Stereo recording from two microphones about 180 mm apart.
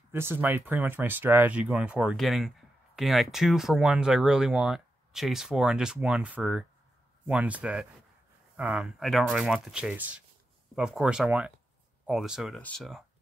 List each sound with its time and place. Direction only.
0.1 s speech: 10° right (ahead or behind)